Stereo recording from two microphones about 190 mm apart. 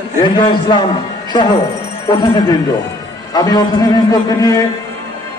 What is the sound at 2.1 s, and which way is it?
A man's voice, 20° left (ahead or behind).